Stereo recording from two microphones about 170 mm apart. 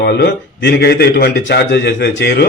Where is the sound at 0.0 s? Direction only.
75° left (ahead or behind); by 2.5 s 90° left.